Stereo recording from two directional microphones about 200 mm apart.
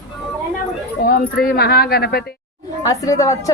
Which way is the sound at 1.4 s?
50° left (ahead or behind).